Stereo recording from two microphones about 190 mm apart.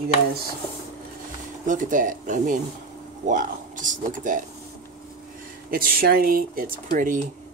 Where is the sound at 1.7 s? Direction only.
45° right (ahead or behind).